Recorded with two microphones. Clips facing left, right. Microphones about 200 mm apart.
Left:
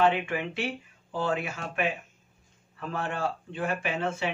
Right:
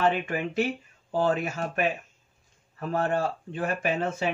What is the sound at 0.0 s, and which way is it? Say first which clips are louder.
A man's voice: even; 45° right (ahead or behind).